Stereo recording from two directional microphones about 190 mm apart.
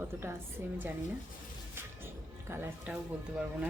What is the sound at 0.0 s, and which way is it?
Speech, 10° right (ahead or behind).